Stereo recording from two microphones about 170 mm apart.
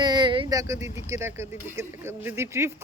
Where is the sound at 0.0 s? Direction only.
25° right (ahead or behind).